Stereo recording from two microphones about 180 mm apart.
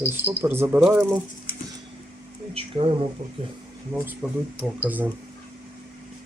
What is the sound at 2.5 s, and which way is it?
Speech, 30° right (ahead or behind).